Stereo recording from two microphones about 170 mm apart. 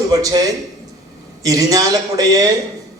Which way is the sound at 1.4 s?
20° right (ahead or behind).